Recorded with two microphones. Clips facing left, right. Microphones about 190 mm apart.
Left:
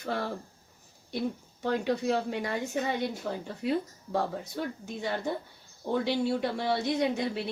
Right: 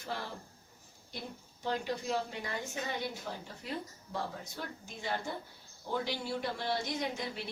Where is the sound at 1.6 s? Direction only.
65° left (ahead or behind).